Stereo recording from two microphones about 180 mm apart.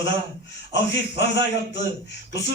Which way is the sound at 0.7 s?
80° left.